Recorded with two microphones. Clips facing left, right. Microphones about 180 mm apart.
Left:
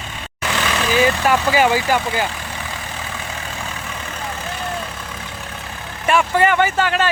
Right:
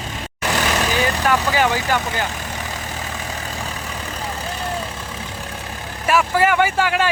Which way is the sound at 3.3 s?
35° right (ahead or behind).